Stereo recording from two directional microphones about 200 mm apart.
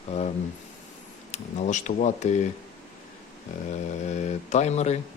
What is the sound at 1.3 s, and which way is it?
A man's voice, 40° left (ahead or behind).